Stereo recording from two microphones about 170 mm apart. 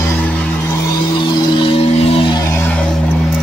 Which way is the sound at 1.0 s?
25° left (ahead or behind).